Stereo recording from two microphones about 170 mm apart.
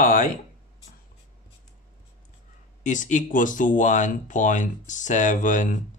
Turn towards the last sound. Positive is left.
turn(degrees=50)  # may be behind; listen again after turning